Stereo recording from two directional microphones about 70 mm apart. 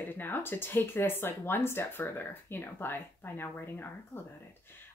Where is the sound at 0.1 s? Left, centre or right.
Left.